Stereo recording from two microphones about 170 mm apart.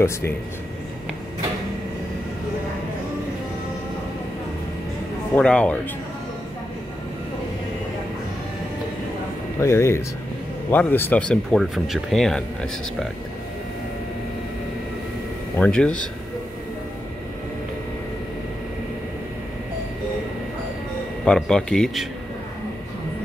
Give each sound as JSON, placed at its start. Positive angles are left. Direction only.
{"t": 5.3, "sound": "speech", "side_deg": 5}
{"t": 9.6, "sound": "speech", "side_deg": 15}
{"t": 15.5, "sound": "speech", "side_deg": 5}
{"t": 21.3, "sound": "speech", "side_deg": 5}